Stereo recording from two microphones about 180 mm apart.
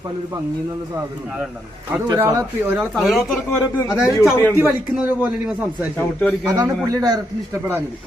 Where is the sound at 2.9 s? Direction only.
Centre (ahead or behind).